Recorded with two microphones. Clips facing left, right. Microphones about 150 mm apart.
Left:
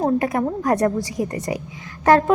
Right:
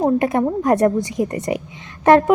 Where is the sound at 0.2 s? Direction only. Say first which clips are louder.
Right 3 dB; 25° right (ahead or behind).